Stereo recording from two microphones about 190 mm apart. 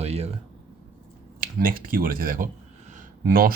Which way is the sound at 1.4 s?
50° right (ahead or behind).